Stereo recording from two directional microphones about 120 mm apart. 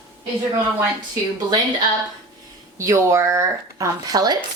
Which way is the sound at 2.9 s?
25° right (ahead or behind).